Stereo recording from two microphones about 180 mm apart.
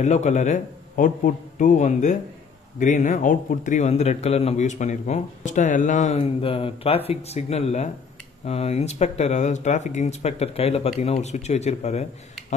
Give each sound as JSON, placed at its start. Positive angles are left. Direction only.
{"t": 0.0, "sound": "a man's voice", "side_deg": 40}